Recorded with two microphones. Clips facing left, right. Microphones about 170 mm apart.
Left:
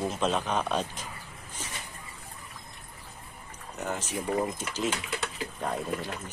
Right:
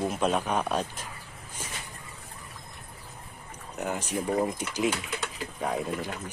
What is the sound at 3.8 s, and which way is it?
Speech, 10° right (ahead or behind).